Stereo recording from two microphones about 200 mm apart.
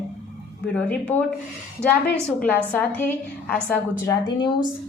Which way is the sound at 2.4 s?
10° left (ahead or behind).